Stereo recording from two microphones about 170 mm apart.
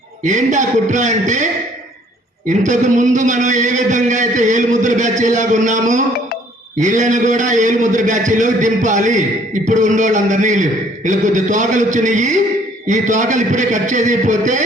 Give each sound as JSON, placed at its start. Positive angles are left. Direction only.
{"t": 0.3, "sound": "a man's voice", "side_deg": -45}
{"t": 2.5, "sound": "a man's voice", "side_deg": -45}